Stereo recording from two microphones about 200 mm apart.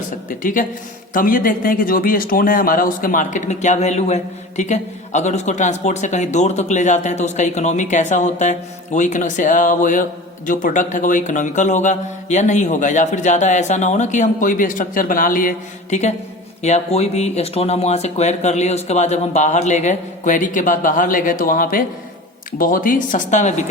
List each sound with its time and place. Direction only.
0.3 s a man's voice: 40° left (ahead or behind)